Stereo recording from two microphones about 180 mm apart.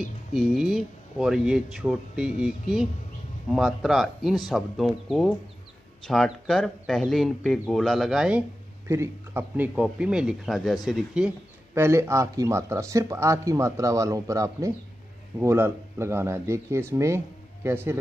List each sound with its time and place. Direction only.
0.3 s speech: 5° right (ahead or behind)